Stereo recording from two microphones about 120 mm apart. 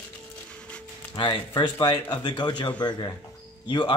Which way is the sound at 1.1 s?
40° left (ahead or behind).